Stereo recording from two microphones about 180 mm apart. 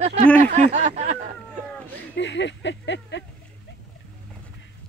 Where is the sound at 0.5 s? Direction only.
40° right (ahead or behind).